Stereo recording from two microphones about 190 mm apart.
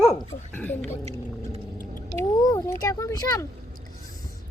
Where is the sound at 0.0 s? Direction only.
5° left (ahead or behind).